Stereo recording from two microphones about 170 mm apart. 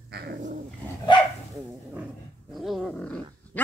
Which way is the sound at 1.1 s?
25° left (ahead or behind).